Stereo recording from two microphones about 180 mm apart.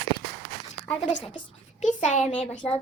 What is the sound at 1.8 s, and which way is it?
Speech, 40° left (ahead or behind).